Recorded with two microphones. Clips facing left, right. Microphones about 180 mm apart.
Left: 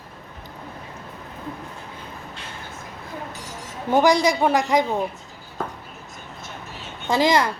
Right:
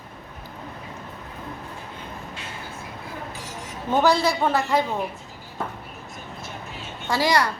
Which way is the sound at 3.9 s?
15° left (ahead or behind).